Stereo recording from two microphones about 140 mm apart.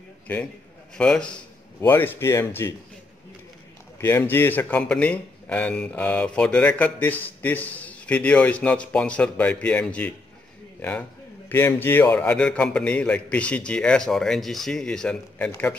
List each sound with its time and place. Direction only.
0.3 s speech: 10° left (ahead or behind)
4.0 s speech: 15° left (ahead or behind)